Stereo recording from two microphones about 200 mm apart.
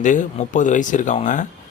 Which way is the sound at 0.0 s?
40° left (ahead or behind).